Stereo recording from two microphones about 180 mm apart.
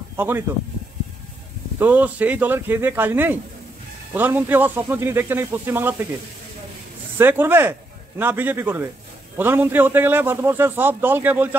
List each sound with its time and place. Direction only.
0.1 s a sound: 10° right (ahead or behind)
1.8 s a man's voice: 10° right (ahead or behind)
7.2 s a man's voice: 10° right (ahead or behind)